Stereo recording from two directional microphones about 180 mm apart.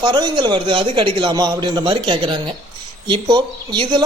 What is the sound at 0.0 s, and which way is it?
Speech, 25° right (ahead or behind).